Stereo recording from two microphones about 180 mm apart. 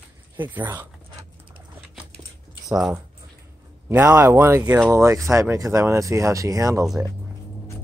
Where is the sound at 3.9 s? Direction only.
15° right (ahead or behind).